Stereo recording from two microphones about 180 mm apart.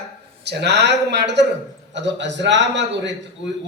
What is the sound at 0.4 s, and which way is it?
A man's voice, 70° right (ahead or behind).